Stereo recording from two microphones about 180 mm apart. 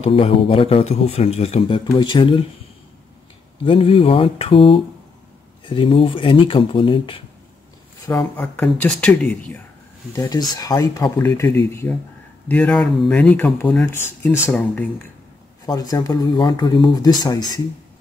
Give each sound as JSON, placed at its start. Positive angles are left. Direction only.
{"t": 0.0, "sound": "speech", "side_deg": 30}
{"t": 3.6, "sound": "speech", "side_deg": 30}
{"t": 8.4, "sound": "speech", "side_deg": 5}
{"t": 10.1, "sound": "speech", "side_deg": 20}
{"t": 15.6, "sound": "speech", "side_deg": 20}